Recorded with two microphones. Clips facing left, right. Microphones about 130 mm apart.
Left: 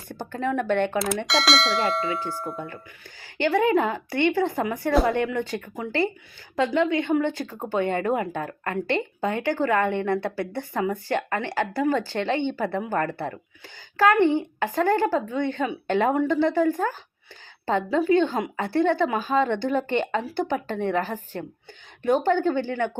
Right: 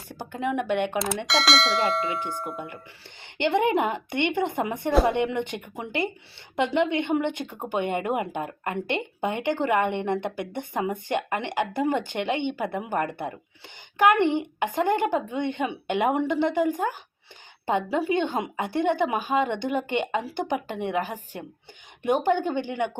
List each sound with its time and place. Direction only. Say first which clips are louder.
0.2 s a woman's voice: left 1 dB; 10° right (ahead or behind)
0.9 s speech: left 2 dB; centre (ahead or behind)
3.3 s a woman's voice: left 2 dB; 25° right (ahead or behind)
17.9 s a woman's voice: left 7 dB; 20° right (ahead or behind)